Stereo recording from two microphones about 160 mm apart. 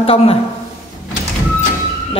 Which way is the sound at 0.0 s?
40° left (ahead or behind).